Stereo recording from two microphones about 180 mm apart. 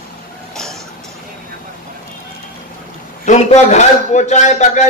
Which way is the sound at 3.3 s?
40° left (ahead or behind).